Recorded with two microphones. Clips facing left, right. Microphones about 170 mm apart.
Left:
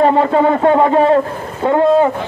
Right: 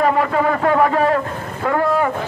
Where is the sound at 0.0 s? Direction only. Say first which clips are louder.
Left 5 dB; 30° left (ahead or behind).